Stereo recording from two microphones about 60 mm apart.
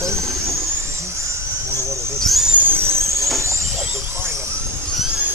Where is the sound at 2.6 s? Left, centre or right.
Right.